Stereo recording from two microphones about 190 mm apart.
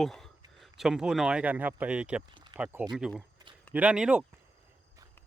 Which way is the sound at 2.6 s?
10° right (ahead or behind).